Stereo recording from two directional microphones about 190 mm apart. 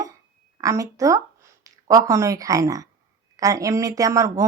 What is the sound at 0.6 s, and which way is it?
Speech, 15° right (ahead or behind).